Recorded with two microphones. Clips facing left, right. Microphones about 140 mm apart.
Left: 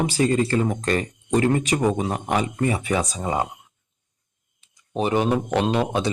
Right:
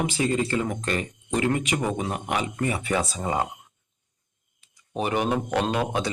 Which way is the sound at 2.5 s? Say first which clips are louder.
Left 3 dB; 25° left (ahead or behind).